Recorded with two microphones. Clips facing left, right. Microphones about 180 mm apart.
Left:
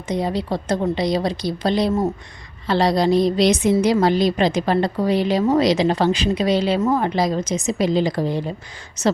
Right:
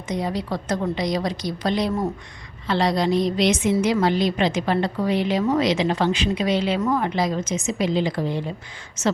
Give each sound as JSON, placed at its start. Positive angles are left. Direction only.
{"t": 0.1, "sound": "a woman's voice", "side_deg": 30}
{"t": 2.6, "sound": "a woman's voice", "side_deg": 35}